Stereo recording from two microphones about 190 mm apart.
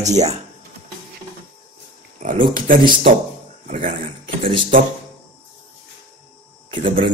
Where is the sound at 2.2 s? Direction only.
40° right (ahead or behind).